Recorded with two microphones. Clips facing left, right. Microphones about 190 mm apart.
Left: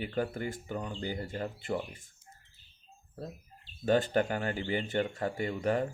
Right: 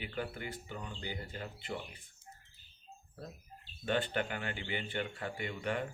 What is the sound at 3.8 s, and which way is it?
Speech, 40° left (ahead or behind).